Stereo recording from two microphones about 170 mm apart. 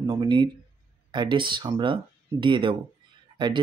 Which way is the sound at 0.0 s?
25° right (ahead or behind).